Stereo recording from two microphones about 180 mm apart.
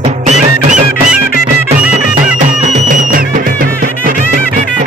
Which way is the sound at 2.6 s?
45° right (ahead or behind).